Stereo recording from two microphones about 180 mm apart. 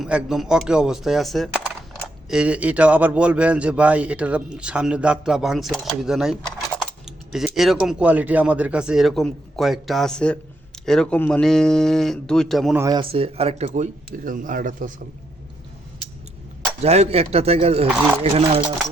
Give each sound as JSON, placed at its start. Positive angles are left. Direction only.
{"t": 0.0, "sound": "a man's voice", "side_deg": -5}
{"t": 7.3, "sound": "speech", "side_deg": 0}
{"t": 12.7, "sound": "a man's voice", "side_deg": -15}
{"t": 13.0, "sound": "speech", "side_deg": -30}
{"t": 16.8, "sound": "speech", "side_deg": -35}
{"t": 17.8, "sound": "a man's voice", "side_deg": -10}
{"t": 18.2, "sound": "speech", "side_deg": -35}